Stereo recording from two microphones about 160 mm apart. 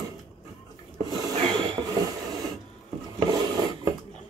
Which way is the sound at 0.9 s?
25° right (ahead or behind).